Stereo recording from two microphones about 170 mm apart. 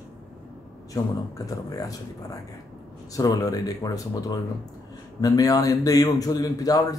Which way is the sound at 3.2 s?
20° left (ahead or behind).